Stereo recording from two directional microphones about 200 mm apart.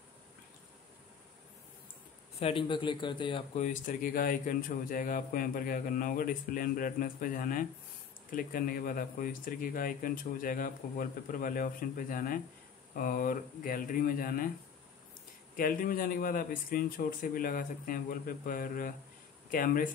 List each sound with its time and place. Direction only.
2.4 s a man's voice: 25° left (ahead or behind)
3.5 s a man's voice: 40° left (ahead or behind)
15.5 s a man's voice: 45° left (ahead or behind)